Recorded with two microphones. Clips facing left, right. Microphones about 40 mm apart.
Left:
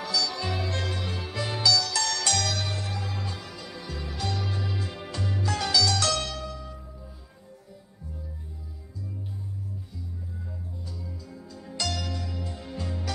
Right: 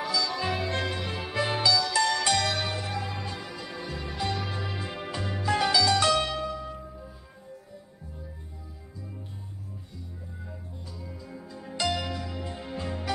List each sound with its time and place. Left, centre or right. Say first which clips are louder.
0.0 s music: right 1 dB; centre
3.0 s music: right 1 dB; right
3.5 s music: right 2 dB; centre
11.1 s music: right 1 dB; right